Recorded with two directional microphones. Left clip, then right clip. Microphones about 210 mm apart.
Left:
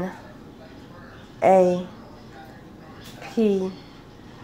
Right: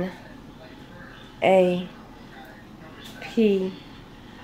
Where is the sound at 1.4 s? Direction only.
Centre (ahead or behind).